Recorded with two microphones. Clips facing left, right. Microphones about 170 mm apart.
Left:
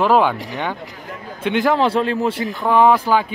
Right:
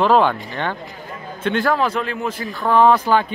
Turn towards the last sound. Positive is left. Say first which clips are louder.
# even
turn(degrees=10)  # may be behind; listen again after turning